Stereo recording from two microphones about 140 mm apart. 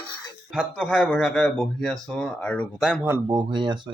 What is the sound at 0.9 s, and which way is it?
Speech, 10° left (ahead or behind).